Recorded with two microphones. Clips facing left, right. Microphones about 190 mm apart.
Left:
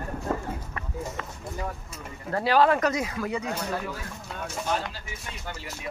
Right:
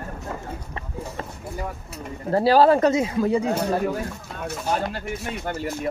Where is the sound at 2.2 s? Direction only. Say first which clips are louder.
Right 5 dB; 35° right (ahead or behind).